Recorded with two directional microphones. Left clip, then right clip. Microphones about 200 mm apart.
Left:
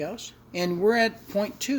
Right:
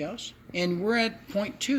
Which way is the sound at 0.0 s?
40° left (ahead or behind).